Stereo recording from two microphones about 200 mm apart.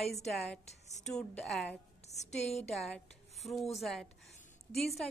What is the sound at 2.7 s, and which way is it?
A woman's voice, centre (ahead or behind).